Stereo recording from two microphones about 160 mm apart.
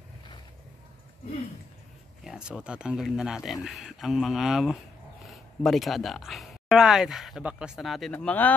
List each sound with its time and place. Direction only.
2.2 s speech: 5° right (ahead or behind)